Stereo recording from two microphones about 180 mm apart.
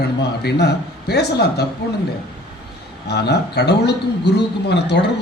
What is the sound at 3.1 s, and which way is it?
A man's voice, 65° left (ahead or behind).